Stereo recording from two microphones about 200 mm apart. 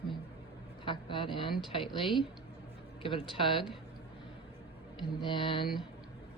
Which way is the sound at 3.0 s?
25° left (ahead or behind).